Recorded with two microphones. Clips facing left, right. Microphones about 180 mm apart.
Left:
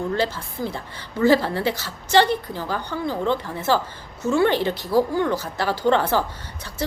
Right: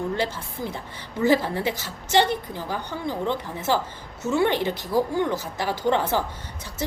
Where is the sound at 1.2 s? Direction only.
15° right (ahead or behind).